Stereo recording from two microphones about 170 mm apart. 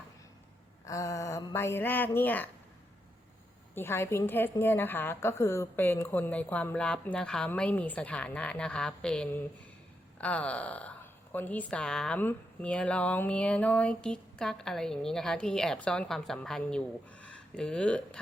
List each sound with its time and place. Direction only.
0.9 s a woman's voice: 20° left (ahead or behind)
3.8 s a woman's voice: 15° left (ahead or behind)